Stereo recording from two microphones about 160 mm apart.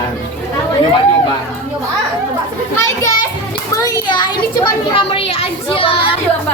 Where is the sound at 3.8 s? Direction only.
25° left (ahead or behind).